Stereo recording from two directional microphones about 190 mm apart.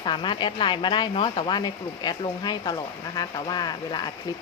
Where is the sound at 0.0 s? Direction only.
25° left (ahead or behind).